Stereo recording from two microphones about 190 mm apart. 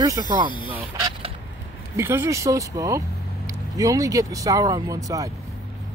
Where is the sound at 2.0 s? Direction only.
15° right (ahead or behind).